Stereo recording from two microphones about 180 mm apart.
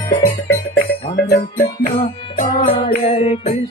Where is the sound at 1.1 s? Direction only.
60° left (ahead or behind).